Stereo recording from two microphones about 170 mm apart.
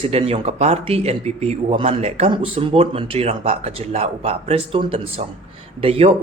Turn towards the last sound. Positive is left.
turn(degrees=-35)  # may be behind; listen again after turning